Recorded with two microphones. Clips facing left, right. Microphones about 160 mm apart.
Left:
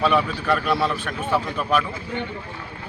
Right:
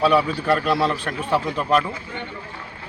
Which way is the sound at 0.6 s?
30° right (ahead or behind).